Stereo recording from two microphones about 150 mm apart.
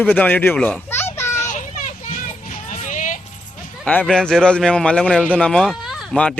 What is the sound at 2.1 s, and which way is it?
Children playing, 55° left (ahead or behind).